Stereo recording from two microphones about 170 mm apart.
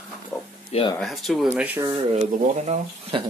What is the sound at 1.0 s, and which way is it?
Speech, centre (ahead or behind).